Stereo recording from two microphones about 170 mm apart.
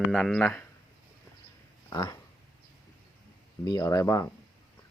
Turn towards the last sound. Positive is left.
turn(degrees=20)  # may be behind; listen again after turning